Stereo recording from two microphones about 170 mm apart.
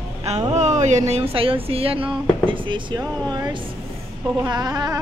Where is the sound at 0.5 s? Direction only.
45° right (ahead or behind); by 3.4 s 25° right (ahead or behind).